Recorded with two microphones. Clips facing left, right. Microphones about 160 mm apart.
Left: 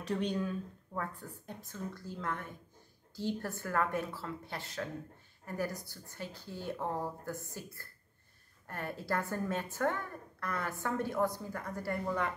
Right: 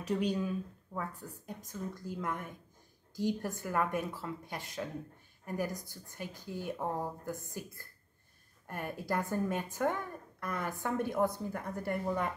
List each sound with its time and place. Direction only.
0.0 s a woman's voice: 10° right (ahead or behind)